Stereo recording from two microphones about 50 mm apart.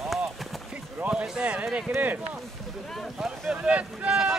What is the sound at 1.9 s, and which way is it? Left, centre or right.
Speech, right.